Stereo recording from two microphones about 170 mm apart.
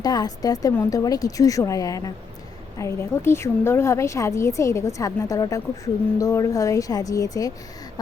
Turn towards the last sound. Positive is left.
turn(degrees=20)  # may be behind; listen again after turning